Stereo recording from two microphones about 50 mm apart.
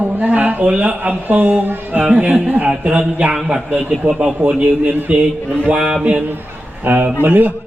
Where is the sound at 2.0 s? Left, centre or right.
Centre.